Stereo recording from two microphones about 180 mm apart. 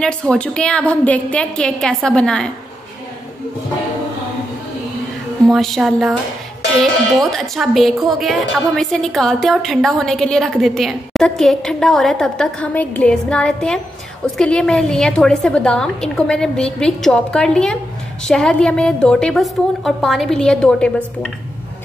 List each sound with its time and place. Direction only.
0.0 s a woman's voice: 5° left (ahead or behind)
5.5 s a woman's voice: centre (ahead or behind)